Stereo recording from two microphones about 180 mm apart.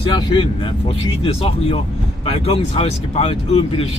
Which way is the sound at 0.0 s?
25° left (ahead or behind).